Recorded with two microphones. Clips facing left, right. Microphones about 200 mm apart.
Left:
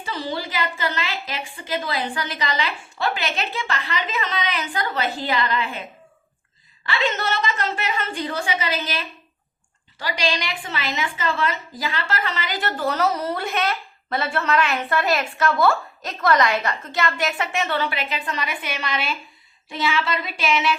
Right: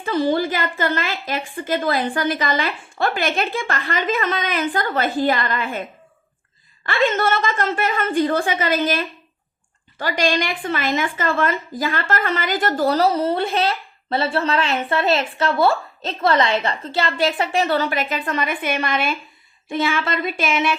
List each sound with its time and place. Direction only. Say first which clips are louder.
0.0 s a woman's voice: right 9 dB; 50° right (ahead or behind)
6.8 s a woman's voice: right 5 dB; 50° right (ahead or behind)